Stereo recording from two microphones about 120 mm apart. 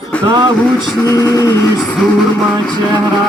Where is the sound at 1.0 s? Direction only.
30° left (ahead or behind).